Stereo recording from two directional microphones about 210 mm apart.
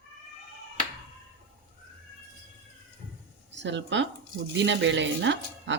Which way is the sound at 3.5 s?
60° right (ahead or behind).